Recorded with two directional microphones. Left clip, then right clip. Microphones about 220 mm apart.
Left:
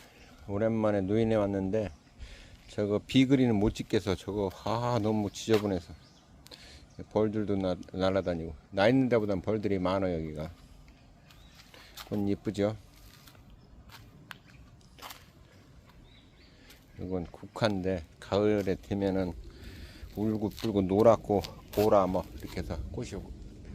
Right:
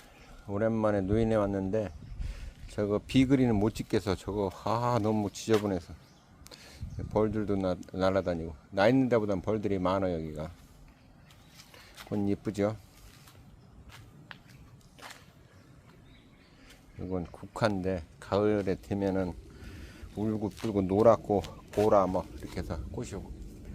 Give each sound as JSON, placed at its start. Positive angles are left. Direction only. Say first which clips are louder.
{"t": 0.4, "sound": "speech", "louder": "even", "side_deg": 0}
{"t": 12.0, "sound": "speech", "louder": "even", "side_deg": -10}
{"t": 15.0, "sound": "a sound", "louder": "left 1 dB", "side_deg": 15}
{"t": 17.0, "sound": "speech", "louder": "even", "side_deg": -5}